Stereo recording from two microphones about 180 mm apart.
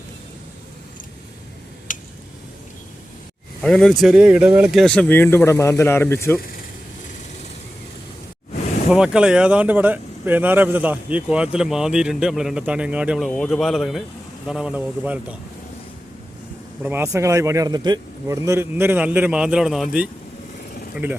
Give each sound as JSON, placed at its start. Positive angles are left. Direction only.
{"t": 1.9, "sound": "a sound", "side_deg": 45}
{"t": 3.6, "sound": "speech", "side_deg": 0}
{"t": 8.9, "sound": "speech", "side_deg": -5}
{"t": 16.8, "sound": "speech", "side_deg": -15}